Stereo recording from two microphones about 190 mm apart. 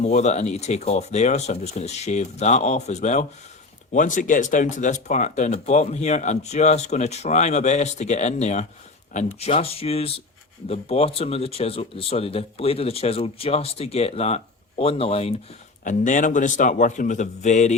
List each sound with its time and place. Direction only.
0.0 s speech: 35° left (ahead or behind)
15.8 s speech: 40° left (ahead or behind)